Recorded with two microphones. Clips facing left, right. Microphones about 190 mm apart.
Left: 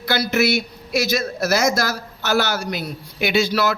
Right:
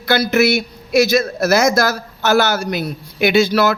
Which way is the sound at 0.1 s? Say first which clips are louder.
Right 5 dB; 50° right (ahead or behind).